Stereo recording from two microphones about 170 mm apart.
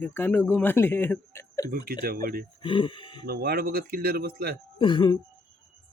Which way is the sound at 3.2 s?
65° right (ahead or behind).